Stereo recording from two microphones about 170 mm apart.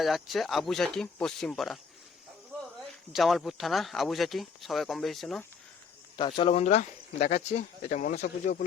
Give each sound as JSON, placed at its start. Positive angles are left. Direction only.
{"t": 0.0, "sound": "speech", "side_deg": 0}
{"t": 3.1, "sound": "speech", "side_deg": 0}
{"t": 6.1, "sound": "speech", "side_deg": 30}